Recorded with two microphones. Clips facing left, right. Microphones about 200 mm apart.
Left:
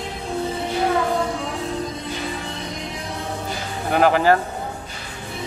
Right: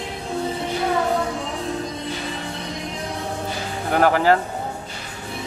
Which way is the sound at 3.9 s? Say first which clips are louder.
Left 1 dB; 15° left (ahead or behind).